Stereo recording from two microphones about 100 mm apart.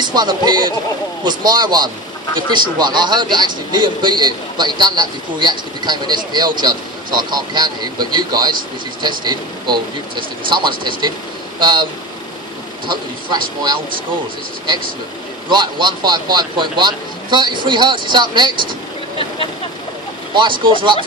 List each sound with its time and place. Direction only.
0.0 s a man's voice: 45° right (ahead or behind)
15.5 s a man's voice: 50° right (ahead or behind)
20.3 s speech: 55° right (ahead or behind)